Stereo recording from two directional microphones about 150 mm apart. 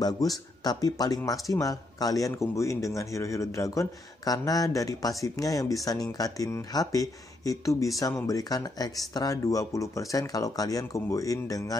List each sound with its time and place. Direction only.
0.0 s speech: 25° left (ahead or behind)